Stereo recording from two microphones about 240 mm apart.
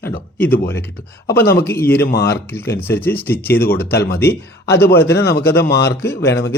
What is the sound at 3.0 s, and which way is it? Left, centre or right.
Speech, centre.